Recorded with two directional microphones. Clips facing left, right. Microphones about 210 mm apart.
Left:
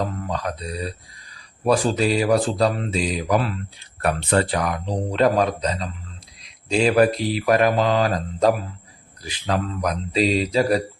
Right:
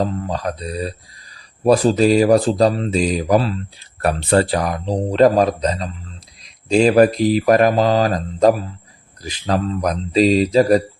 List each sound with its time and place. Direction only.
0.0 s speech: 30° right (ahead or behind)